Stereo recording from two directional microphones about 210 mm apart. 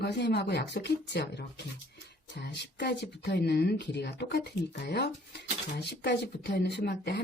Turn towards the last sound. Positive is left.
turn(degrees=50)  # may be behind; listen again after turning